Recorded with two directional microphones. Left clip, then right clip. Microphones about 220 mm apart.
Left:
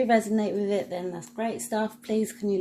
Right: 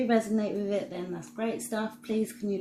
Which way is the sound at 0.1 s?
45° left (ahead or behind).